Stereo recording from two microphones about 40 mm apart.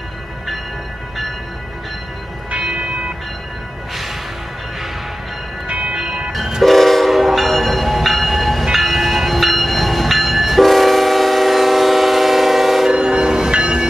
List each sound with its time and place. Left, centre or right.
5.7 s train: right
5.9 s train: right
6.6 s train: centre
12.9 s train: centre